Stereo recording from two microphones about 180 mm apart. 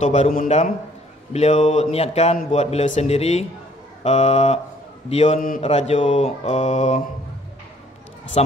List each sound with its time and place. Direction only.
0.0 s mantra: 40° left (ahead or behind)